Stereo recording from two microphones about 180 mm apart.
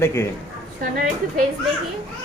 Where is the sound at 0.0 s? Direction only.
15° left (ahead or behind).